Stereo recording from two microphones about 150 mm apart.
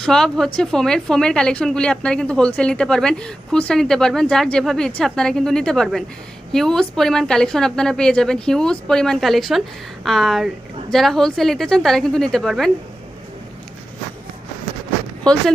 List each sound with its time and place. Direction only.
0.0 s a woman's voice: 5° left (ahead or behind)
15.2 s speech: 5° left (ahead or behind)